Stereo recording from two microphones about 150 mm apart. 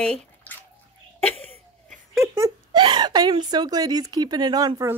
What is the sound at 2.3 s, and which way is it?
A woman's voice, 25° right (ahead or behind).